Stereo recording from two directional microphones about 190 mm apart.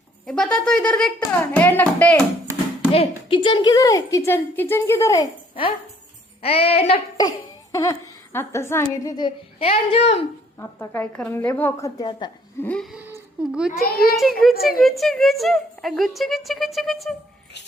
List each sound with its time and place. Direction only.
0.3 s speech: 5° left (ahead or behind)
2.9 s a woman's voice: 30° left (ahead or behind)
7.2 s speech: 15° left (ahead or behind)
10.6 s speech: 10° left (ahead or behind)
12.6 s speech: 5° left (ahead or behind)